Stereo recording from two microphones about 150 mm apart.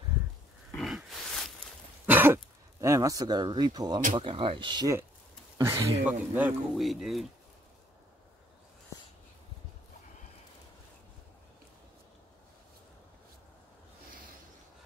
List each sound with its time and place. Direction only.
0.7 s grunt: centre (ahead or behind)
2.0 s speech: 15° right (ahead or behind); by 4.9 s 30° right (ahead or behind)
5.6 s speech: 20° right (ahead or behind); by 7.2 s centre (ahead or behind)